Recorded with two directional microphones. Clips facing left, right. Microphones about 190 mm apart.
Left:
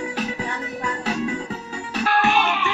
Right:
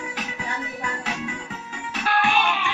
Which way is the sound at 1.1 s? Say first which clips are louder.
Left 10 dB; 35° left (ahead or behind).